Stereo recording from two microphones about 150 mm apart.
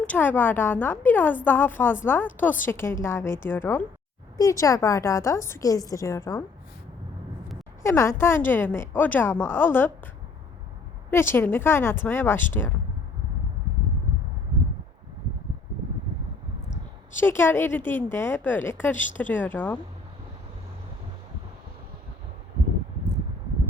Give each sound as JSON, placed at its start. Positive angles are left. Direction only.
{"t": 0.0, "sound": "a woman's voice", "side_deg": 10}
{"t": 7.8, "sound": "a woman's voice", "side_deg": 20}
{"t": 11.1, "sound": "a woman's voice", "side_deg": 15}
{"t": 17.2, "sound": "a woman's voice", "side_deg": 15}